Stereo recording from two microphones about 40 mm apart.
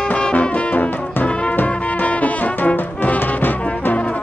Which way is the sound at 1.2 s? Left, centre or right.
Left.